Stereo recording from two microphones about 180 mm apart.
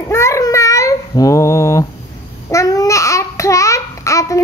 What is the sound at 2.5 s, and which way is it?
Speech, 20° left (ahead or behind).